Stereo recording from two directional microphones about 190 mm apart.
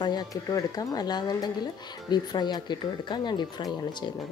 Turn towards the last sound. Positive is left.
turn(degrees=25)  # may be behind; listen again after turning